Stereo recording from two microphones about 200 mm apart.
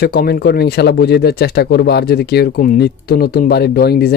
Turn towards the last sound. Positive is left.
turn(degrees=50)  # may be behind; listen again after turning